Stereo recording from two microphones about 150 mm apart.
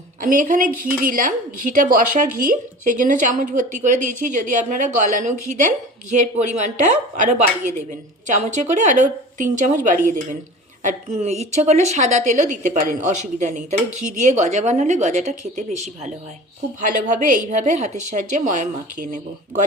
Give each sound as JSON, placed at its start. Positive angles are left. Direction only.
{"t": 0.2, "sound": "a woman's voice", "side_deg": -60}
{"t": 16.8, "sound": "speech", "side_deg": -65}